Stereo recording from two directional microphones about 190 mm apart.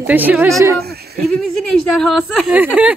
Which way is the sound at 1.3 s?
Centre (ahead or behind).